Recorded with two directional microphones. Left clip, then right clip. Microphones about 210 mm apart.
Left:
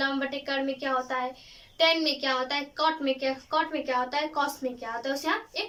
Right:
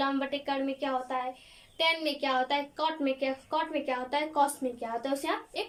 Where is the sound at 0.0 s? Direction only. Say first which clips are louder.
Left 1 dB; 10° right (ahead or behind).